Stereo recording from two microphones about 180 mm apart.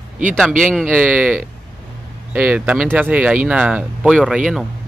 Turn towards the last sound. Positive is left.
turn(degrees=-5)  # may be behind; listen again after turning